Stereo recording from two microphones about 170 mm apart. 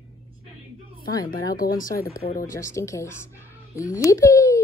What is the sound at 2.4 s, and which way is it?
Speech, 15° left (ahead or behind).